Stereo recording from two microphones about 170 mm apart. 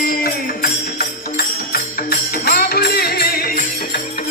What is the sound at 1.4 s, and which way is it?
Music, 65° left (ahead or behind).